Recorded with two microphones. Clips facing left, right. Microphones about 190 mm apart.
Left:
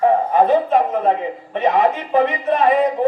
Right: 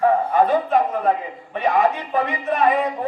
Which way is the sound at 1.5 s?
25° left (ahead or behind).